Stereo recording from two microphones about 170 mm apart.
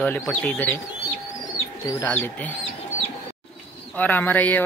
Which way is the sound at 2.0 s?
10° left (ahead or behind).